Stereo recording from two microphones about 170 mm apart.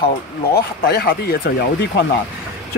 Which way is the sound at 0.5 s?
60° left (ahead or behind).